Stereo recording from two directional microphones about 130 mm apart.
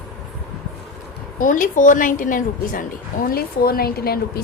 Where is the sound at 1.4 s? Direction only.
90° left.